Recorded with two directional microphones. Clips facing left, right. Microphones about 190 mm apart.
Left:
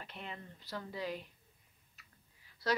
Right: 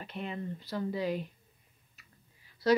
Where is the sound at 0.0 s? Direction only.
15° right (ahead or behind).